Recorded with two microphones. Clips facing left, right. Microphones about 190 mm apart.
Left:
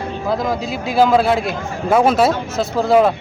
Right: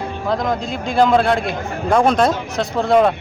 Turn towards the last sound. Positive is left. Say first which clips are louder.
# left 1 dB
turn(degrees=0)  # may be behind; listen again after turning